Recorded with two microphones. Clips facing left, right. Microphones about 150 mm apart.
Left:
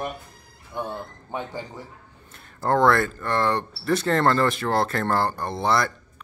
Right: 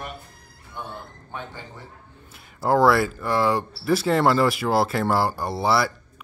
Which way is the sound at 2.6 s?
5° right (ahead or behind).